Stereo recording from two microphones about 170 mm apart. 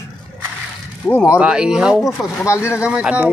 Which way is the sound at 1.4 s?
5° right (ahead or behind).